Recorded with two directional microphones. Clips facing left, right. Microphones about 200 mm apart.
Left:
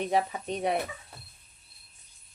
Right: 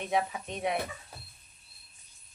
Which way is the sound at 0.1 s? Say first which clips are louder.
Left 3 dB; 35° left (ahead or behind).